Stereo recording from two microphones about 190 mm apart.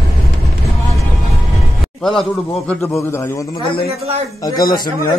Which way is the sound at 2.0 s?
5° left (ahead or behind).